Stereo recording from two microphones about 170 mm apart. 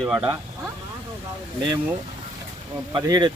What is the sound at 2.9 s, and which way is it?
Speech, 25° right (ahead or behind).